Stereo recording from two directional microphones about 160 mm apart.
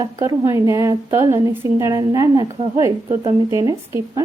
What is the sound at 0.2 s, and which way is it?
A woman's voice, 20° right (ahead or behind).